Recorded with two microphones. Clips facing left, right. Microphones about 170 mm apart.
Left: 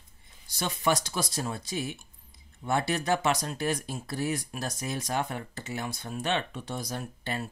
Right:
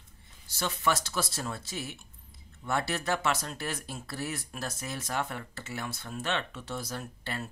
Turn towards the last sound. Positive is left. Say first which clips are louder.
# left 3 dB
turn(degrees=15)  # may be behind; listen again after turning